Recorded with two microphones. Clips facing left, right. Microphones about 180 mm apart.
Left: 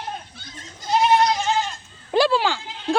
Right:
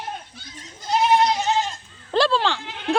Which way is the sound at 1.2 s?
20° right (ahead or behind).